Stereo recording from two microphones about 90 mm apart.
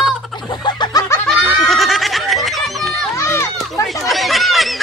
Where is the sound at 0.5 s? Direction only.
55° left (ahead or behind).